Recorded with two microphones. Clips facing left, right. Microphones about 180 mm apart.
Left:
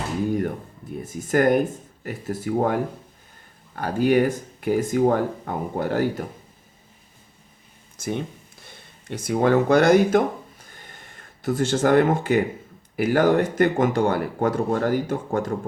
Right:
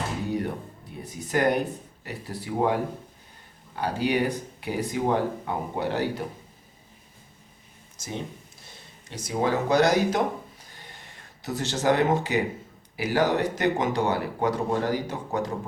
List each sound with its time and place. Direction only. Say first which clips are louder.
0.3 s a sound: left 4 dB; 50° left (ahead or behind)
2.0 s speech: left 7 dB; 50° left (ahead or behind)
3.8 s speech: left 6 dB; 50° left (ahead or behind)
7.9 s speech: left 7 dB; 55° left (ahead or behind)
8.6 s a sound: left 6 dB; 55° left (ahead or behind)
13.0 s speech: left 5 dB; 50° left (ahead or behind)